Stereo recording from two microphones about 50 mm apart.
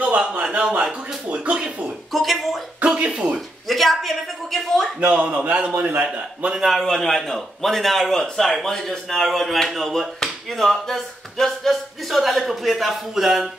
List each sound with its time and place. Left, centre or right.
0.1 s speech: right
2.1 s speech: centre
2.8 s a sound: centre
3.3 s speech: centre
5.0 s a man's voice: right
6.6 s speech: centre